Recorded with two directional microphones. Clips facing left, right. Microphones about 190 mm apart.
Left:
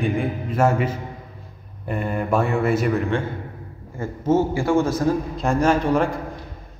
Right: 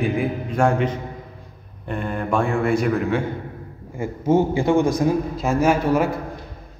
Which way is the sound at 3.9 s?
10° right (ahead or behind).